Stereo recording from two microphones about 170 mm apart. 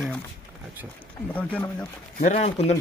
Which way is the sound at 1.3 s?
10° left (ahead or behind).